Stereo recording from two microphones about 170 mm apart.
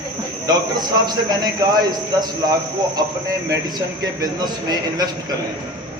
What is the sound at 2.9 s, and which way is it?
A man's voice, 20° right (ahead or behind).